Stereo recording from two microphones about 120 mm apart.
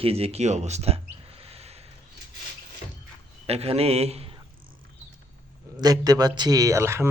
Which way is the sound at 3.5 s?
55° right (ahead or behind).